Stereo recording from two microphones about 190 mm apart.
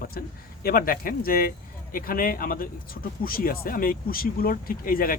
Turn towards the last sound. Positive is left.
turn(degrees=50)  # may be behind; listen again after turning